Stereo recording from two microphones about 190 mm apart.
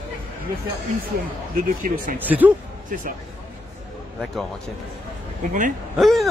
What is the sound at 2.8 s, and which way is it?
Speech, 45° right (ahead or behind).